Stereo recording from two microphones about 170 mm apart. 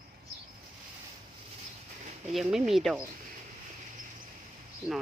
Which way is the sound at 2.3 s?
Centre (ahead or behind).